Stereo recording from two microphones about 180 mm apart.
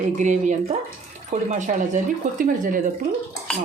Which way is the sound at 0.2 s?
40° right (ahead or behind).